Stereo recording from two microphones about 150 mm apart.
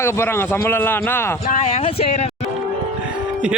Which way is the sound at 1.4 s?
50° left (ahead or behind).